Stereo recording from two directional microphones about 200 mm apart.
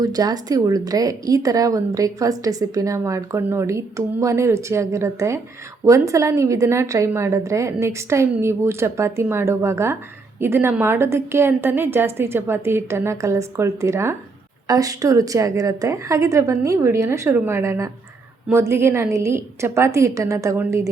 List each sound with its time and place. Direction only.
0.0 s a woman's voice: 20° right (ahead or behind)